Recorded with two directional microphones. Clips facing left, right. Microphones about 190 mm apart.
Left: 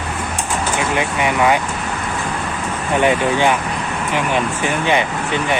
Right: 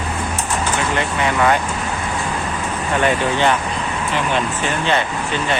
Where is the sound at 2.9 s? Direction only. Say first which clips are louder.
Left 3 dB; 15° left (ahead or behind).